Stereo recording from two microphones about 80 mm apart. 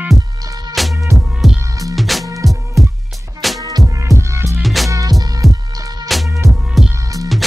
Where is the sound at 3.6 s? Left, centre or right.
Right.